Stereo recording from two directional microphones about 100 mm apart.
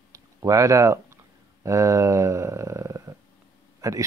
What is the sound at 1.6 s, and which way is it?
Speech, 30° right (ahead or behind).